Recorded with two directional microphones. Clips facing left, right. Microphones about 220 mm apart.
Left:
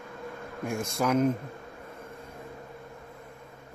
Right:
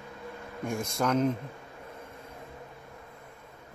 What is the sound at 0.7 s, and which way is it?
Speech, 5° left (ahead or behind).